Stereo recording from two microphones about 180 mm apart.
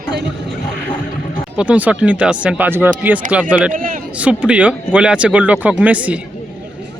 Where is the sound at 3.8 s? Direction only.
50° right (ahead or behind).